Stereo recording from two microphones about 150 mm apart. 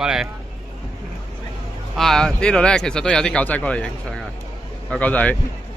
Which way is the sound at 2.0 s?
5° left (ahead or behind).